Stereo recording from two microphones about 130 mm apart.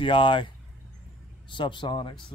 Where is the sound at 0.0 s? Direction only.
40° left (ahead or behind).